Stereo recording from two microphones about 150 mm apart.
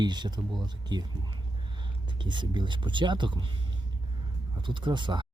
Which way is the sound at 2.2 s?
30° right (ahead or behind).